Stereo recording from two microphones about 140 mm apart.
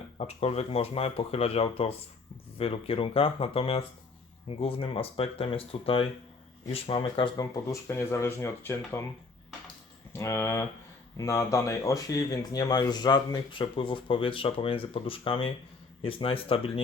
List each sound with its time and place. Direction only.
0.2 s speech: 50° left (ahead or behind)
7.3 s speech: 25° left (ahead or behind)
10.1 s speech: 20° left (ahead or behind); by 16.8 s 40° left (ahead or behind)